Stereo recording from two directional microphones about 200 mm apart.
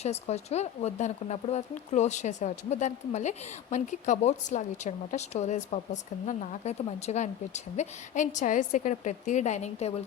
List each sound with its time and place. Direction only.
0.0 s speech: 30° left (ahead or behind)